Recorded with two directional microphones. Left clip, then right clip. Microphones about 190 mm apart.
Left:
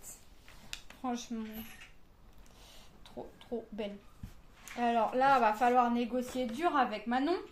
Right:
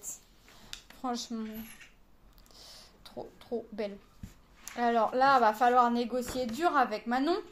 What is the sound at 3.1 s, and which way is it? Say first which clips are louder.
Speech: right 4 dB; 45° right (ahead or behind).